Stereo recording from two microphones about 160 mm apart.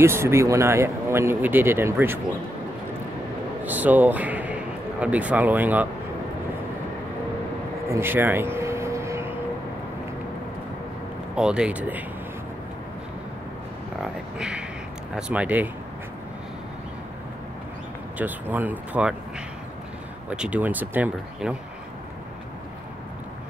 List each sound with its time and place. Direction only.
0.0 s speech: 15° right (ahead or behind)
3.6 s speech: 10° right (ahead or behind)
7.9 s a sound: 15° right (ahead or behind)
11.3 s speech: 5° right (ahead or behind)
14.0 s a sound: 5° right (ahead or behind)
15.1 s speech: 5° right (ahead or behind)
18.1 s speech: 10° right (ahead or behind)
20.2 s speech: 10° right (ahead or behind)